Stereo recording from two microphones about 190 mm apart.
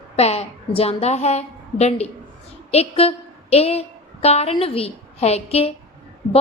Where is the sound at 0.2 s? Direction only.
35° left (ahead or behind).